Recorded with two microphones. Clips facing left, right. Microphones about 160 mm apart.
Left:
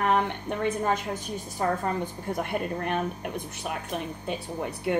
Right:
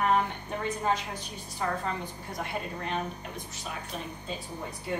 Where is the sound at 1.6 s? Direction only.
40° left (ahead or behind).